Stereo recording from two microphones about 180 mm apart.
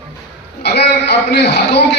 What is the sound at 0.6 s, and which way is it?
A man's voice, 70° left (ahead or behind).